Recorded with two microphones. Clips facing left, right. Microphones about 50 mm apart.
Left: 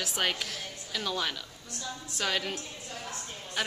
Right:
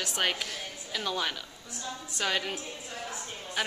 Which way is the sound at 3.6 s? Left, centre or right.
Centre.